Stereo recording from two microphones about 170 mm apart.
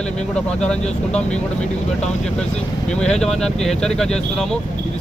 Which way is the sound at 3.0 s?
5° left (ahead or behind).